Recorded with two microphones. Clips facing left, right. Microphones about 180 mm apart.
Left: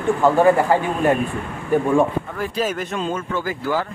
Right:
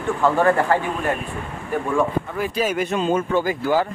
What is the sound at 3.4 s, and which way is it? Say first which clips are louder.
Speech: right 3 dB; 20° right (ahead or behind).